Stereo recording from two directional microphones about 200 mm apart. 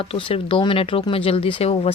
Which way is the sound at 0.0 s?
25° left (ahead or behind).